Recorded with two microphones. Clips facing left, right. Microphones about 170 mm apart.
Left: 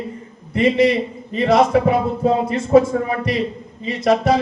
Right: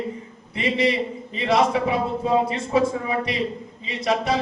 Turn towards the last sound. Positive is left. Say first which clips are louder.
# left 7 dB
turn(degrees=50)  # may be behind; listen again after turning